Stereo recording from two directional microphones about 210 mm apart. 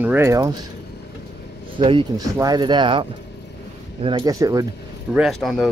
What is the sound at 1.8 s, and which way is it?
Speech, 25° right (ahead or behind).